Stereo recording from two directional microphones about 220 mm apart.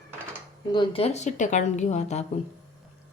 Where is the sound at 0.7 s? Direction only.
20° left (ahead or behind).